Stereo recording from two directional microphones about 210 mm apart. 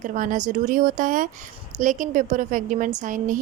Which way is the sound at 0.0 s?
40° right (ahead or behind).